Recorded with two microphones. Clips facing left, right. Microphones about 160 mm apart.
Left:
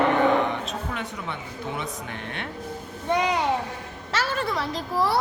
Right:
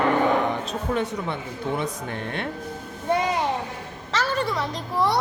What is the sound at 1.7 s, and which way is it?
Speech, 40° right (ahead or behind).